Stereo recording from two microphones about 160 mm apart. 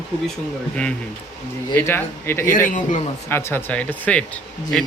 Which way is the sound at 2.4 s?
55° left (ahead or behind).